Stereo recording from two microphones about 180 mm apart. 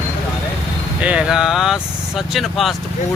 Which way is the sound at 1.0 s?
5° right (ahead or behind).